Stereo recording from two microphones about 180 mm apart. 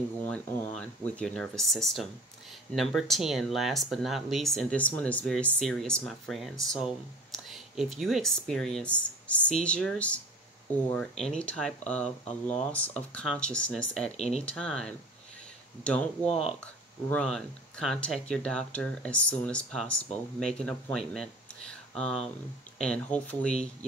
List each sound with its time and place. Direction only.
0.7 s speech: 5° left (ahead or behind)
14.1 s speech: 35° left (ahead or behind)
14.4 s speech: 5° left (ahead or behind)